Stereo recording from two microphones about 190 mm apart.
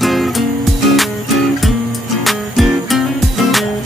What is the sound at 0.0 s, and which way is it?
Music, centre (ahead or behind).